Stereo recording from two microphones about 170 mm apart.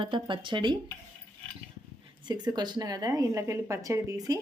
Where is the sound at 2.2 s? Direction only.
25° right (ahead or behind).